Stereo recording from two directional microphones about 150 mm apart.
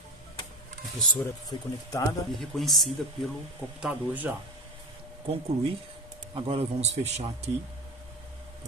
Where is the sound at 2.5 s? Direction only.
Centre (ahead or behind).